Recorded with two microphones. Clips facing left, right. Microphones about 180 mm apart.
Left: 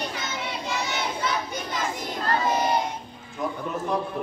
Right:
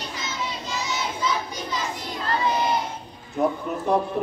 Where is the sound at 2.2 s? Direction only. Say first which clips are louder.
Even; 45° left (ahead or behind).